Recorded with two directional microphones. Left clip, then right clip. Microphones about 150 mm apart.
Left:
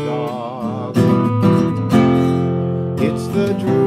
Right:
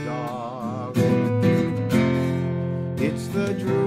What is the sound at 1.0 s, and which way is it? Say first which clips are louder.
Music: left 5 dB; 30° left (ahead or behind).